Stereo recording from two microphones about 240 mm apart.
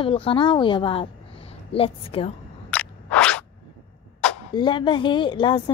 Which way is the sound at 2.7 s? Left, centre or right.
Centre.